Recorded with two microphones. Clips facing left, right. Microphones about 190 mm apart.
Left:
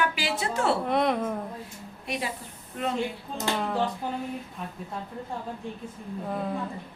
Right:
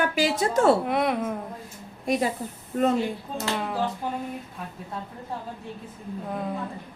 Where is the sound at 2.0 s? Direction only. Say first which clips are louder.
Right 8 dB; 45° right (ahead or behind).